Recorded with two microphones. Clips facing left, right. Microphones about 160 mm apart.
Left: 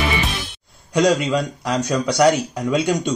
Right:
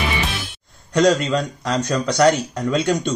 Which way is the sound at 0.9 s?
10° left (ahead or behind).